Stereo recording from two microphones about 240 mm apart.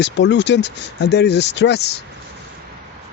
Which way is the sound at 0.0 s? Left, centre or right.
Left.